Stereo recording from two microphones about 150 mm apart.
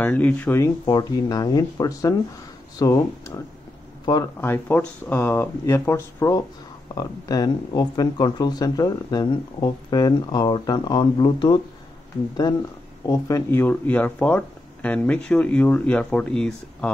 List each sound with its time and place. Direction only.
0.0 s speech: 10° left (ahead or behind)
0.8 s speech: 25° left (ahead or behind)
4.4 s speech: 15° left (ahead or behind); by 11.6 s 30° left (ahead or behind)
13.0 s speech: 20° left (ahead or behind); by 16.9 s 5° left (ahead or behind)